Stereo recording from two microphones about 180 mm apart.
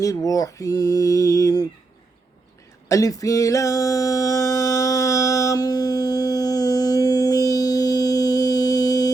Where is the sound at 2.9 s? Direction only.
20° left (ahead or behind).